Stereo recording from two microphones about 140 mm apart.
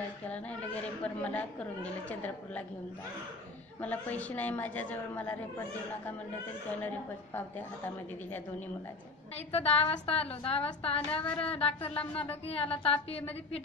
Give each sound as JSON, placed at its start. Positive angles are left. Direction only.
{"t": 0.3, "sound": "speech", "side_deg": 10}
{"t": 3.8, "sound": "speech", "side_deg": 10}
{"t": 7.3, "sound": "speech", "side_deg": 15}
{"t": 9.5, "sound": "a woman's voice", "side_deg": 45}
{"t": 11.2, "sound": "speech", "side_deg": 10}
{"t": 11.5, "sound": "a woman's voice", "side_deg": 45}